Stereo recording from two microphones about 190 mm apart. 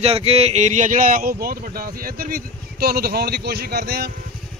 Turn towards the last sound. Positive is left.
turn(degrees=-55)  # may be behind; listen again after turning